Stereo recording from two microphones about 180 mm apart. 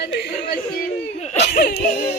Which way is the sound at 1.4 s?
65° left (ahead or behind).